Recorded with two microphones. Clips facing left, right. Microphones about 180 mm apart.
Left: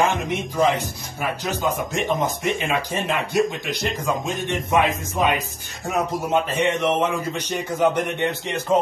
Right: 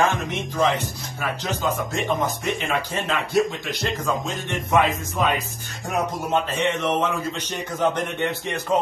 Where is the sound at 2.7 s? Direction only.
15° left (ahead or behind).